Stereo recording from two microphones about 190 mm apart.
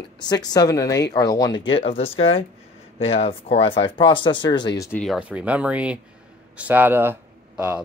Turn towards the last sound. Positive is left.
turn(degrees=-10)  # may be behind; listen again after turning